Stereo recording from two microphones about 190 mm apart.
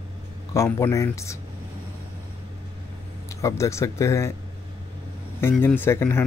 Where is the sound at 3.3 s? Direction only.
15° left (ahead or behind).